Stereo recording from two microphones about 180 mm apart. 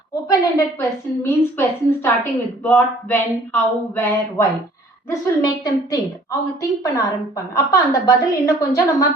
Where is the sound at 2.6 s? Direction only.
10° left (ahead or behind).